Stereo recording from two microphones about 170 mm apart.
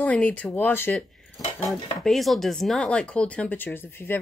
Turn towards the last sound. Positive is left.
turn(degrees=10)  # may be behind; listen again after turning